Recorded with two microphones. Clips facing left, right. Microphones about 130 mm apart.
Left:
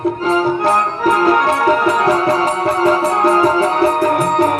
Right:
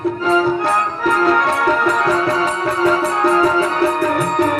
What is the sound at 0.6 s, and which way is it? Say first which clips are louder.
Music: left 3 dB; 40° left (ahead or behind).